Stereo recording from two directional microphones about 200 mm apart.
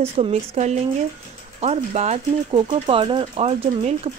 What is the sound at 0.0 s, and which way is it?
Speech, 30° right (ahead or behind).